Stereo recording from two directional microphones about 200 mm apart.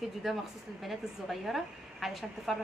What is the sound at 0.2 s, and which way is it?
Speech, centre (ahead or behind).